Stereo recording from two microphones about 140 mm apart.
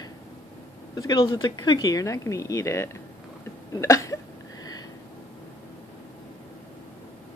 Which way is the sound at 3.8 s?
20° left (ahead or behind).